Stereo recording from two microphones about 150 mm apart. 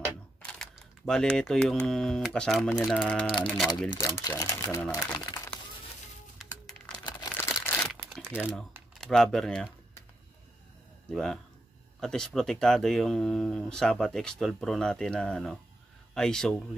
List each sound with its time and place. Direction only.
0.4 s speech: 5° left (ahead or behind)
3.9 s speech: 25° left (ahead or behind)
4.8 s speech: 10° left (ahead or behind)
7.3 s a sound: 15° left (ahead or behind)
8.5 s speech: 5° left (ahead or behind)
11.1 s speech: 5° left (ahead or behind)